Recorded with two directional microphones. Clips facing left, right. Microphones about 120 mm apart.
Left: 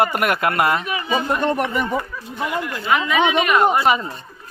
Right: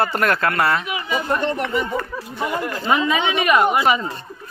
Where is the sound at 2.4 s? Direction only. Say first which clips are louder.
Even; 45° right (ahead or behind).